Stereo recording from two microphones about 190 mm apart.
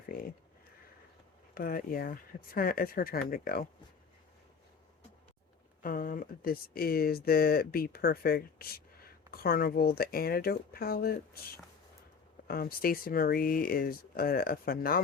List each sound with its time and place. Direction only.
0.1 s a sound: 50° left (ahead or behind)
1.5 s speech: 50° left (ahead or behind)
5.8 s speech: 45° left (ahead or behind)